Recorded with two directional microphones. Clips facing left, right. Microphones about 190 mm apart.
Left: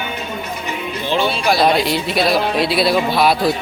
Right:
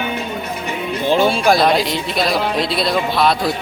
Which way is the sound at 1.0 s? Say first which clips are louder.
Right 4 dB; 45° right (ahead or behind).